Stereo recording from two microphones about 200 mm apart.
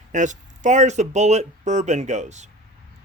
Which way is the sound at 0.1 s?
35° right (ahead or behind).